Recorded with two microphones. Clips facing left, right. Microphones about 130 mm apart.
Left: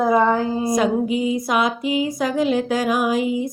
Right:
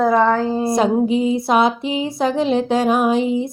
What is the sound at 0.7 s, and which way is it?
Music, 30° right (ahead or behind).